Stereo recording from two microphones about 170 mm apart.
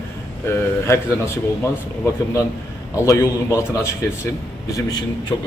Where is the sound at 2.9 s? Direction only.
15° left (ahead or behind).